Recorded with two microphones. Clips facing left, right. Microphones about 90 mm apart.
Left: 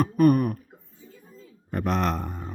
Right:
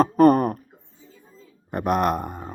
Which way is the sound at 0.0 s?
35° right (ahead or behind).